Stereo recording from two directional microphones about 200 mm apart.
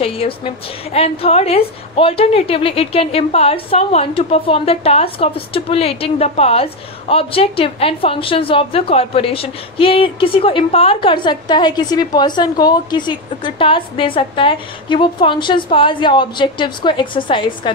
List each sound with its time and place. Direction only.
0.0 s a woman's voice: 25° left (ahead or behind)